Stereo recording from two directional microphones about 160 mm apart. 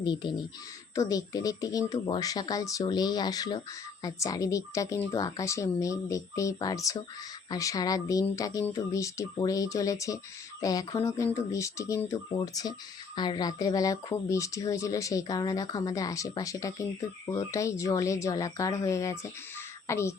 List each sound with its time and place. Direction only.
0.0 s speech: 30° left (ahead or behind)